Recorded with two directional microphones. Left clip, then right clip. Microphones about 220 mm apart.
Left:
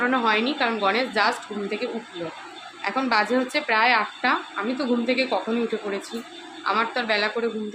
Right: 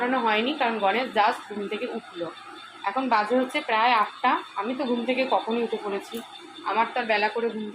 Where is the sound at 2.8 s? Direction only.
15° left (ahead or behind).